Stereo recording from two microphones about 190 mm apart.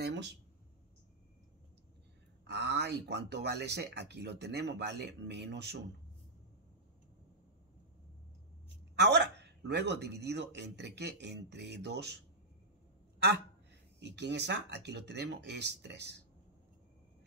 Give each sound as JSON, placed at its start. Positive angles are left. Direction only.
{"t": 0.0, "sound": "a sound", "side_deg": -65}
{"t": 2.4, "sound": "speech", "side_deg": -65}
{"t": 8.9, "sound": "speech", "side_deg": -65}
{"t": 13.9, "sound": "speech", "side_deg": -65}